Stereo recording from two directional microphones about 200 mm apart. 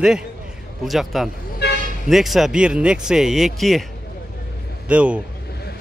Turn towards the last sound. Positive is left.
turn(degrees=-5)  # may be behind; listen again after turning